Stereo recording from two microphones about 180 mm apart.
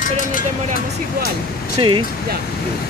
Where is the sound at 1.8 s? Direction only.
25° right (ahead or behind).